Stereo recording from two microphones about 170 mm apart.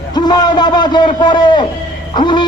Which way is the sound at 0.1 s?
25° left (ahead or behind).